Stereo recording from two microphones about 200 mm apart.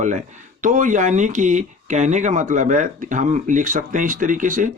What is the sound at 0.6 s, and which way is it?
Speech, 40° right (ahead or behind).